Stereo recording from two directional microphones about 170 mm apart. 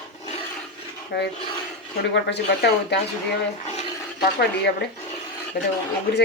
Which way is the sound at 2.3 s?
85° left.